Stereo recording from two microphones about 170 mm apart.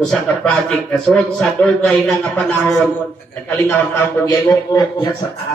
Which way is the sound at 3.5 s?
20° left (ahead or behind).